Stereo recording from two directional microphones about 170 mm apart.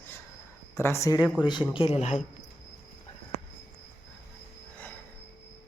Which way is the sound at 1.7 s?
35° left (ahead or behind).